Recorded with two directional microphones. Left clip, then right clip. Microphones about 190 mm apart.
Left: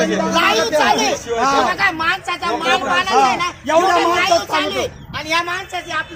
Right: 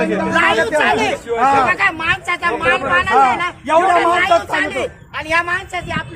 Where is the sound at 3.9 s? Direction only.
5° left (ahead or behind).